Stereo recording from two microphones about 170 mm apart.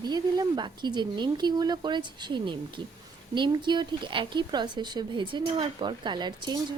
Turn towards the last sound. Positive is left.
turn(degrees=-25)  # may be behind; listen again after turning